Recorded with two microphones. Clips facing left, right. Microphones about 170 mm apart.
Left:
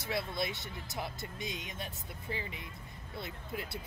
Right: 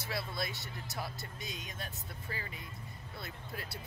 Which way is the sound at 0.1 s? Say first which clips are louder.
Left 4 dB; 20° left (ahead or behind).